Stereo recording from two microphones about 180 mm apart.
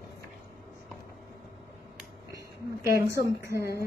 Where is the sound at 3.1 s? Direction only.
15° right (ahead or behind).